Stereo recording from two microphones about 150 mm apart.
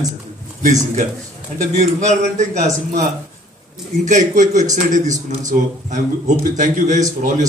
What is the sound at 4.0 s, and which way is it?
Speech, 55° right (ahead or behind).